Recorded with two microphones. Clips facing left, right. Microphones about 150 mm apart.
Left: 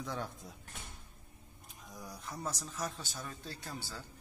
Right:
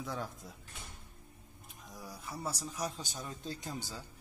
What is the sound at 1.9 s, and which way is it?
Speech, 5° right (ahead or behind).